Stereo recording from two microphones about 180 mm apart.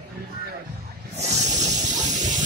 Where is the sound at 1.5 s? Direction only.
40° right (ahead or behind).